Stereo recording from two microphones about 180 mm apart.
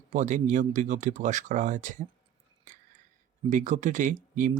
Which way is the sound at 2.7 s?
45° right (ahead or behind).